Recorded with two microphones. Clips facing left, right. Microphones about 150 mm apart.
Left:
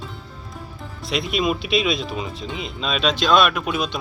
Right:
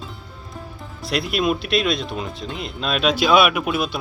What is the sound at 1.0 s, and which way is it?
Speech, centre (ahead or behind).